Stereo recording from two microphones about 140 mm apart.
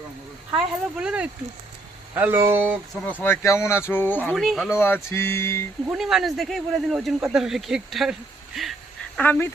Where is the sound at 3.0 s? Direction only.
15° left (ahead or behind).